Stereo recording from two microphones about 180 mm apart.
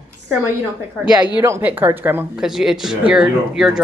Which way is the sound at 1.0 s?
10° right (ahead or behind).